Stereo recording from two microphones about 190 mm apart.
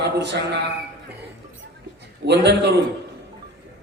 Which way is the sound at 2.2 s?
65° right (ahead or behind).